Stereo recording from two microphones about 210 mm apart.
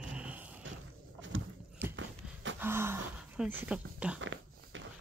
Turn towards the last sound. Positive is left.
turn(degrees=-65)  # may be behind; listen again after turning